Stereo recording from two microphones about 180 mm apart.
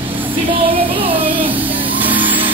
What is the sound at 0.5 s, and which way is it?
Child singing, 30° right (ahead or behind).